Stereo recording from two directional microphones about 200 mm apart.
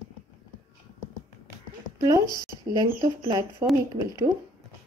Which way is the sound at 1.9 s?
20° right (ahead or behind).